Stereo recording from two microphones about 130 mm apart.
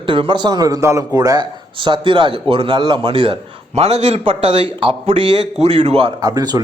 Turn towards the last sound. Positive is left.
turn(degrees=-30)  # may be behind; listen again after turning